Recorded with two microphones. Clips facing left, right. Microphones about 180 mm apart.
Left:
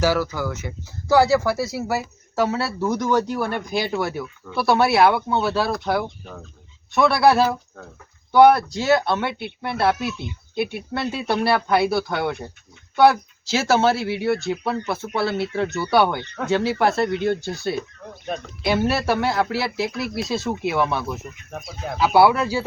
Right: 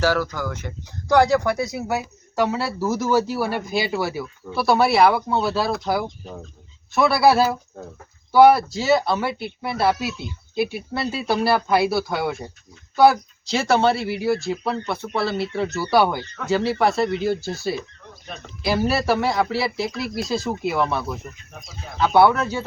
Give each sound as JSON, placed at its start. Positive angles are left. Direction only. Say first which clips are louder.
{"t": 0.0, "sound": "speech", "louder": "left 1 dB", "side_deg": 10}
{"t": 21.5, "sound": "speech", "louder": "left 8 dB", "side_deg": 60}
{"t": 21.9, "sound": "speech", "louder": "even", "side_deg": 5}